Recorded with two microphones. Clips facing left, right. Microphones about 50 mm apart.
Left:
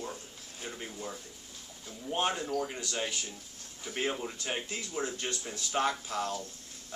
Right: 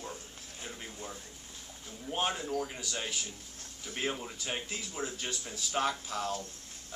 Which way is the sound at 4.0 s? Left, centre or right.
Centre.